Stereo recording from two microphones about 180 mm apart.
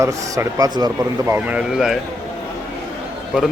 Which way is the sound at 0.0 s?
15° right (ahead or behind).